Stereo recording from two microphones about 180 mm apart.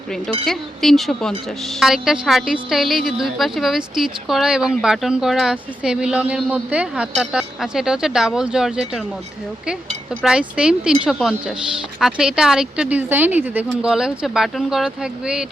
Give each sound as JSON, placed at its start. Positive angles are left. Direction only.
{"t": 0.4, "sound": "a woman's voice", "side_deg": 0}
{"t": 10.2, "sound": "a woman's voice", "side_deg": -5}